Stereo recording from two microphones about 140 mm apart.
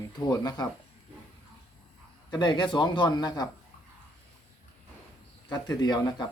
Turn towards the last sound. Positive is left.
turn(degrees=30)  # may be behind; listen again after turning